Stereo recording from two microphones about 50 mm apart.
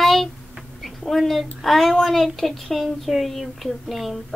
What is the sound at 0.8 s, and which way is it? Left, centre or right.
A woman's voice, centre.